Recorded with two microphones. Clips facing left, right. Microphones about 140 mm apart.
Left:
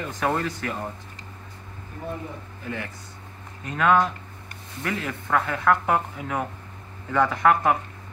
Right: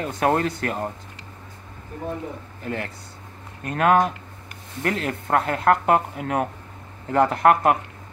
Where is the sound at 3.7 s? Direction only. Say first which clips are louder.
Right 2 dB; 60° right (ahead or behind).